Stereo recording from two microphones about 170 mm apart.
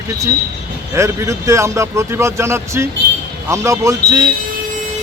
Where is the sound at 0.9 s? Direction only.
15° right (ahead or behind).